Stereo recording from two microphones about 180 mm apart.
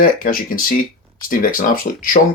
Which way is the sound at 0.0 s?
50° left (ahead or behind).